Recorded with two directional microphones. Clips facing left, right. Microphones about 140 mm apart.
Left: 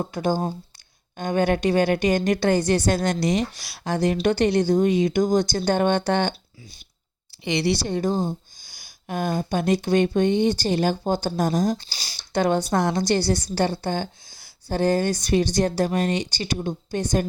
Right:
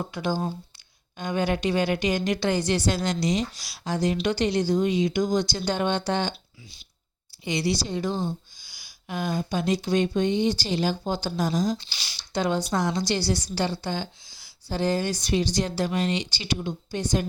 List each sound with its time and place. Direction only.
0.0 s a woman's voice: 45° left (ahead or behind)
7.3 s a woman's voice: 70° left (ahead or behind); by 11.9 s 50° left (ahead or behind)
11.9 s speech: 40° left (ahead or behind)
12.3 s a woman's voice: 55° left (ahead or behind)